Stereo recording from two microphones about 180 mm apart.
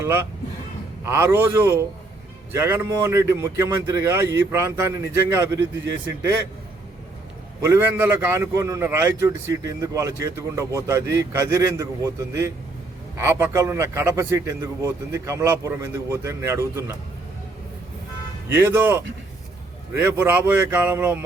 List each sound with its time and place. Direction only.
0.0 s a man's voice: 15° right (ahead or behind)
7.6 s a man's voice: 15° right (ahead or behind)
18.4 s a man's voice: 10° right (ahead or behind)